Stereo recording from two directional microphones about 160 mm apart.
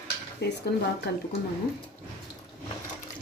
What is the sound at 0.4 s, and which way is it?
Speech, 90° left.